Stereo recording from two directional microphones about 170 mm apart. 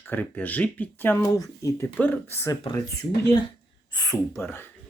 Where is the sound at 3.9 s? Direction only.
20° left (ahead or behind).